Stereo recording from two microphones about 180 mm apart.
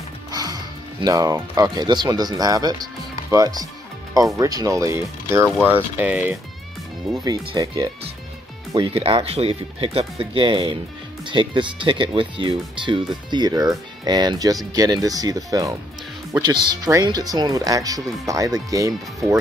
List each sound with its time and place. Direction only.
0.3 s speech: 20° right (ahead or behind)
7.2 s speech: 20° right (ahead or behind)